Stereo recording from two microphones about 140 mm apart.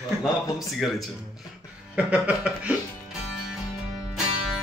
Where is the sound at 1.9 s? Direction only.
10° right (ahead or behind).